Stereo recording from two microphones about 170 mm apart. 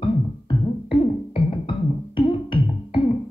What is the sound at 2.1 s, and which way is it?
Music, 30° left (ahead or behind).